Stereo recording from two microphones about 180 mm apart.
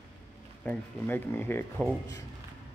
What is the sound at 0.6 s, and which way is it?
Speech, 10° left (ahead or behind).